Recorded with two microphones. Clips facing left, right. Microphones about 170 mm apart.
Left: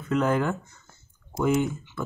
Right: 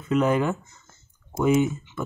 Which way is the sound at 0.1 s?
15° right (ahead or behind).